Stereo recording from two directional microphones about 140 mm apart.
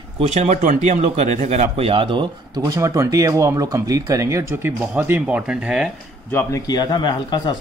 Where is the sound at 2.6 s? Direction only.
25° right (ahead or behind); by 5.9 s 5° right (ahead or behind).